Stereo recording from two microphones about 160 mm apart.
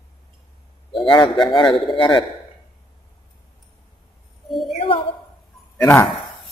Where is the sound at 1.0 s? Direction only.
35° left (ahead or behind).